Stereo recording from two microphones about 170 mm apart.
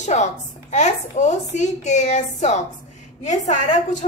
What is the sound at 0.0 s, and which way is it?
A woman's voice, 45° left (ahead or behind).